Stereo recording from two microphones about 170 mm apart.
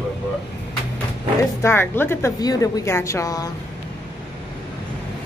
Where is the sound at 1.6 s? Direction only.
15° left (ahead or behind).